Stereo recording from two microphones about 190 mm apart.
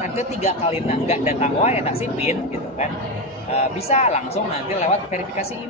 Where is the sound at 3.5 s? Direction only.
35° left (ahead or behind).